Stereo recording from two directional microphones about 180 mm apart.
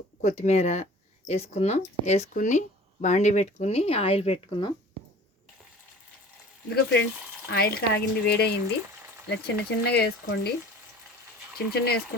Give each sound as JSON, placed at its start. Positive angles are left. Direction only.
{"t": 0.2, "sound": "speech", "side_deg": 40}
{"t": 6.7, "sound": "speech", "side_deg": 75}
{"t": 7.5, "sound": "speech", "side_deg": 60}
{"t": 11.5, "sound": "speech", "side_deg": 60}